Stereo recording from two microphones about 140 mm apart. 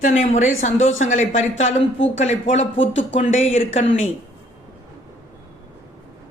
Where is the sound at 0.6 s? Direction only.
60° left (ahead or behind).